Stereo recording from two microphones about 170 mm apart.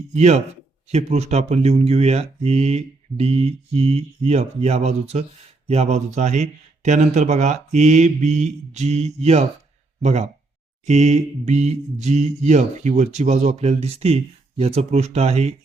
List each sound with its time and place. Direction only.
0.1 s speech: 40° right (ahead or behind)